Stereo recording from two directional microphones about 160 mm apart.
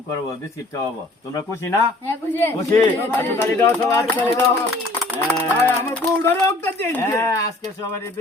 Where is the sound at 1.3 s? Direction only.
20° left (ahead or behind).